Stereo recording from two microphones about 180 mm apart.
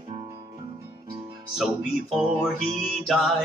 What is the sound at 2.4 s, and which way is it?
Music, centre (ahead or behind).